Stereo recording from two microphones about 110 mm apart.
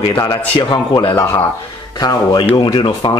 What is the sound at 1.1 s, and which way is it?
Speech, 20° left (ahead or behind).